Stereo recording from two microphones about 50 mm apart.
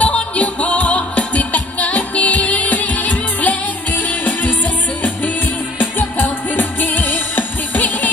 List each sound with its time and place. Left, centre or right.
0.0 s music: left
5.8 s music: left